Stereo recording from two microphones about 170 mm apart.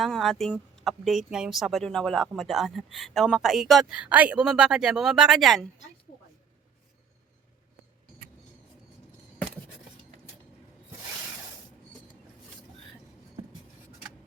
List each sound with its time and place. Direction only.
0.0 s speech: centre (ahead or behind)